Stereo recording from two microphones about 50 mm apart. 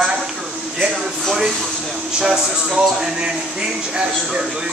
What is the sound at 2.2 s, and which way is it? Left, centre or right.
Speech, centre.